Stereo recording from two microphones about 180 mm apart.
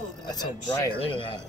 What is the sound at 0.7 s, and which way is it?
Speech, 25° left (ahead or behind).